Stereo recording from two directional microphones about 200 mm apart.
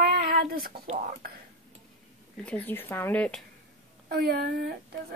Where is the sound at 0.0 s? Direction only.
50° right (ahead or behind).